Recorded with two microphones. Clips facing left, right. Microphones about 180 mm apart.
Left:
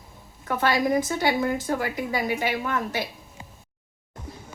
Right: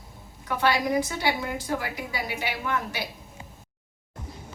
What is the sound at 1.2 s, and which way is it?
A woman's voice, 50° left (ahead or behind).